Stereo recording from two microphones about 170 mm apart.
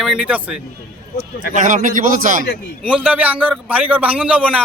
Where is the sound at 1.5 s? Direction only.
50° right (ahead or behind).